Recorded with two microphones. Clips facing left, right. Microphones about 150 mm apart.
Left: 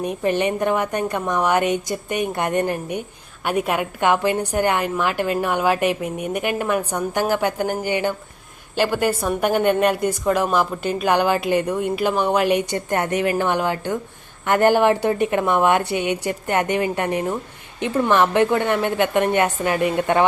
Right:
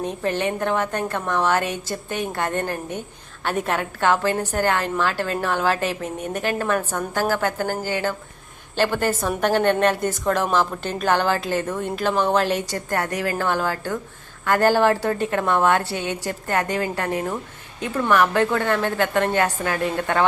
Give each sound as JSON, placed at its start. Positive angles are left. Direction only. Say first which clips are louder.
{"t": 0.0, "sound": "a woman's voice", "louder": "left 3 dB", "side_deg": 15}